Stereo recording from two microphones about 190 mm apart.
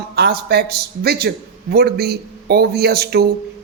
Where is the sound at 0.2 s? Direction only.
55° right (ahead or behind).